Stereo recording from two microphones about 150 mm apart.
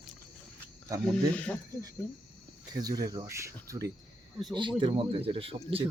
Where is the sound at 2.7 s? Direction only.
25° right (ahead or behind).